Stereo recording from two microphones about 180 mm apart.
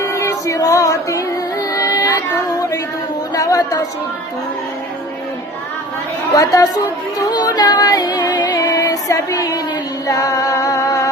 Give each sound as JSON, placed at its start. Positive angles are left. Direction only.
{"t": 0.0, "sound": "music", "side_deg": 15}
{"t": 1.7, "sound": "child singing", "side_deg": 20}
{"t": 3.3, "sound": "a woman's voice", "side_deg": 20}
{"t": 6.3, "sound": "a woman's voice", "side_deg": 20}
{"t": 7.3, "sound": "child singing", "side_deg": 20}
{"t": 10.1, "sound": "music", "side_deg": 20}